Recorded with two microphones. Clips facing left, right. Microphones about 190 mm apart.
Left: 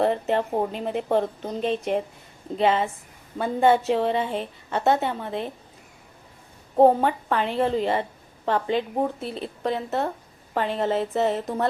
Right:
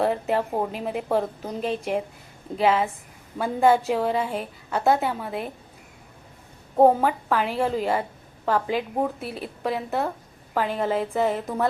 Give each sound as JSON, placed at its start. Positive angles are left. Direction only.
{"t": 0.0, "sound": "a woman's voice", "side_deg": -5}
{"t": 6.7, "sound": "a woman's voice", "side_deg": -5}
{"t": 11.2, "sound": "speech", "side_deg": 25}